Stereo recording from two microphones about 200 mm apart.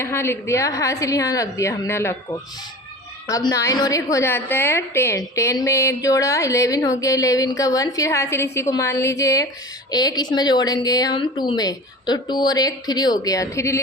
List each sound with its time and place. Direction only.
0.0 s a woman's voice: 10° left (ahead or behind)